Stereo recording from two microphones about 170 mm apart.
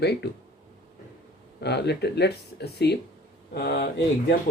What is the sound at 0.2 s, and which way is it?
Speech, 75° left (ahead or behind).